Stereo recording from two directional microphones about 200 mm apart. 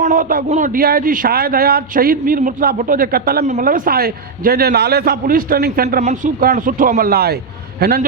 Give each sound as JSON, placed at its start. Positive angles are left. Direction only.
{"t": 0.0, "sound": "a man's voice", "side_deg": -40}
{"t": 6.0, "sound": "a man's voice", "side_deg": -35}